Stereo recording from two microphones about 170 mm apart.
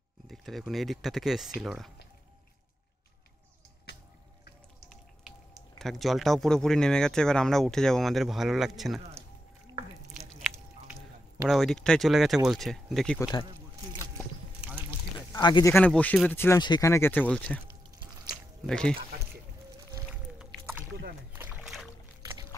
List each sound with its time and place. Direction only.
0.3 s speech: centre (ahead or behind)
5.8 s speech: centre (ahead or behind)
10.0 s squish: centre (ahead or behind)
11.4 s speech: centre (ahead or behind)
14.6 s rowboat: 5° right (ahead or behind)
15.1 s a sound: 25° left (ahead or behind)
15.7 s speech: 10° left (ahead or behind)
18.3 s liquid: 5° left (ahead or behind)
20.9 s rowboat: 70° right (ahead or behind)
21.4 s boat: 10° right (ahead or behind)
22.2 s boat: 20° right (ahead or behind)